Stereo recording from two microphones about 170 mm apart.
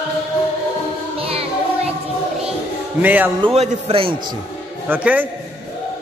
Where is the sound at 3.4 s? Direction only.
35° right (ahead or behind).